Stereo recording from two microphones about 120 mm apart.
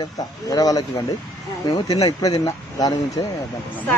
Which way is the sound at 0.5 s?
30° left (ahead or behind).